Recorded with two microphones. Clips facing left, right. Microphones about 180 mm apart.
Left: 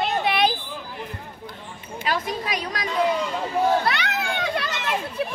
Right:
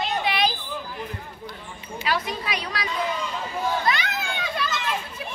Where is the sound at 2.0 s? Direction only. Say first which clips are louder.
Left 1 dB; 45° left (ahead or behind).